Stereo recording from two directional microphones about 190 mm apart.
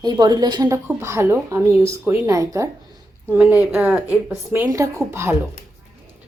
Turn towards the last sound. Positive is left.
turn(degrees=-15)  # may be behind; listen again after turning